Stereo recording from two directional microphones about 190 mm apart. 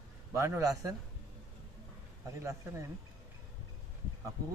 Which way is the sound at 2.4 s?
15° right (ahead or behind).